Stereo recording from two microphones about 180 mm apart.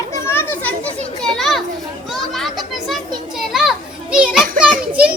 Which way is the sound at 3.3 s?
Centre (ahead or behind).